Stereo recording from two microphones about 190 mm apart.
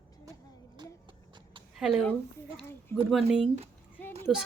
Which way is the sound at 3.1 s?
Centre (ahead or behind).